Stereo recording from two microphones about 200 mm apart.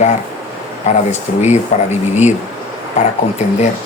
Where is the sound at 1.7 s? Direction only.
35° left (ahead or behind).